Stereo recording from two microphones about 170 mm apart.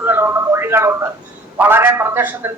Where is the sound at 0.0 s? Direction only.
10° right (ahead or behind).